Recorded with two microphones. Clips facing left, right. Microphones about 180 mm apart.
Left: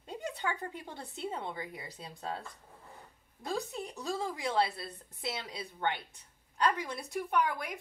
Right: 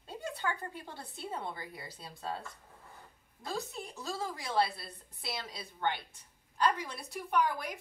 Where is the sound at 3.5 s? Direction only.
15° left (ahead or behind).